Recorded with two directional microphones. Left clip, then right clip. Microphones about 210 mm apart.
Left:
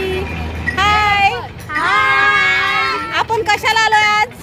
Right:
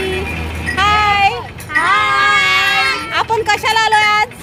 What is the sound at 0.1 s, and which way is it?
Vehicle, 50° right (ahead or behind).